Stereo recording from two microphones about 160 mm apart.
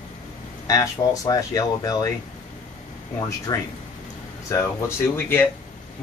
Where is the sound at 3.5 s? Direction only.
25° left (ahead or behind).